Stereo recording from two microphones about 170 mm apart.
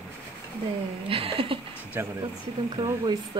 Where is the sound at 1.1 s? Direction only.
30° right (ahead or behind).